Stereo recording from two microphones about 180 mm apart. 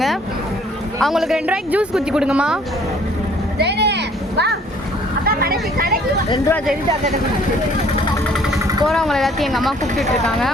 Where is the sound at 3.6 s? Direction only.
70° right (ahead or behind).